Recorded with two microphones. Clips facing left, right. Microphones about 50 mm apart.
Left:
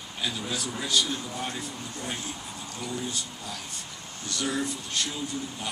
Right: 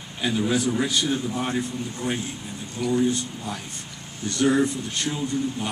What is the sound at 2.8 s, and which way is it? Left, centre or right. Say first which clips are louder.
Speech: right 11 dB; centre.